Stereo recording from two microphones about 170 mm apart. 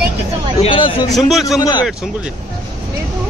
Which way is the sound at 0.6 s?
30° left (ahead or behind).